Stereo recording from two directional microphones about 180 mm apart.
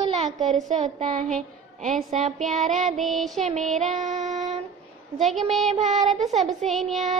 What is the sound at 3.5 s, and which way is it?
Speech, 40° right (ahead or behind).